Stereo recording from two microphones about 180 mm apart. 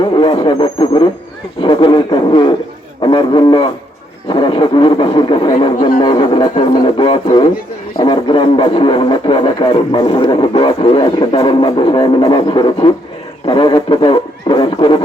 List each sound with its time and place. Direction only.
0.0 s speech: 25° left (ahead or behind)